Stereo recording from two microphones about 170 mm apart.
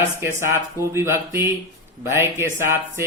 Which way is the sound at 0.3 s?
15° right (ahead or behind).